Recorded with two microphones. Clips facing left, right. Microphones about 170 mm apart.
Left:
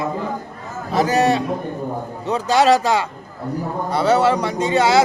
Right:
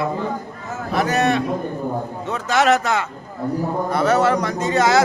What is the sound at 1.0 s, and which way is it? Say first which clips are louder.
A man's voice: left 2 dB; 35° left (ahead or behind).